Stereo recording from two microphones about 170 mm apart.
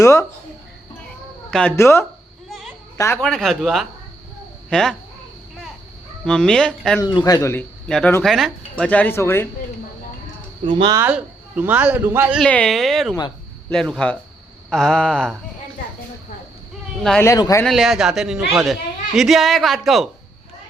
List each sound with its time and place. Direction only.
0.0 s speech: 20° left (ahead or behind)
1.5 s speech: 5° left (ahead or behind)
1.7 s speech: 15° left (ahead or behind)
3.2 s speech: centre (ahead or behind)
6.2 s speech: 5° left (ahead or behind)
7.0 s speech: 25° left (ahead or behind)
7.9 s speech: 5° left (ahead or behind)
10.7 s speech: 30° right (ahead or behind)
10.9 s a man's voice: 10° right (ahead or behind)
12.4 s speech: 5° left (ahead or behind)
17.0 s speech: centre (ahead or behind)
17.2 s speech: 20° left (ahead or behind)
17.6 s speech: centre (ahead or behind)